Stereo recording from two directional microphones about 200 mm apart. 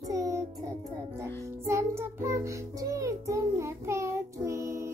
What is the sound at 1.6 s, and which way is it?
Music, 15° right (ahead or behind).